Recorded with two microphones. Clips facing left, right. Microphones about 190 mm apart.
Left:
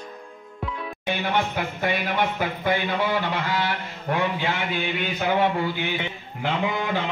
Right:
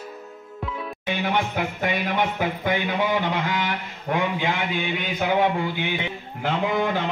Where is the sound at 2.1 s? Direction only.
15° right (ahead or behind).